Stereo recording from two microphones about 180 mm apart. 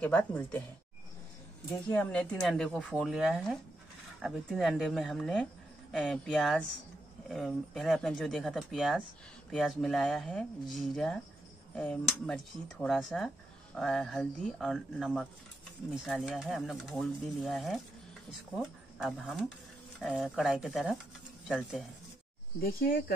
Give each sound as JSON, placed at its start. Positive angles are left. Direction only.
{"t": 0.0, "sound": "speech", "side_deg": 10}
{"t": 1.9, "sound": "speech", "side_deg": 5}
{"t": 22.6, "sound": "speech", "side_deg": 55}